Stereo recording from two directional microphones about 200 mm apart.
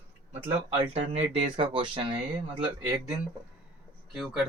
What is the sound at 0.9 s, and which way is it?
Speech, 30° right (ahead or behind).